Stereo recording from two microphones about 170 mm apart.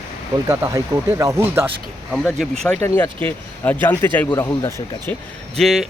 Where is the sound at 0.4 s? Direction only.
15° right (ahead or behind).